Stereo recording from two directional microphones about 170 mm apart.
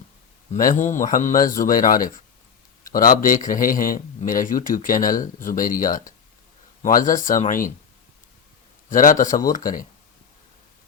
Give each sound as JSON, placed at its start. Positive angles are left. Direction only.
{"t": 0.5, "sound": "a man's voice", "side_deg": 45}
{"t": 8.9, "sound": "a man's voice", "side_deg": 50}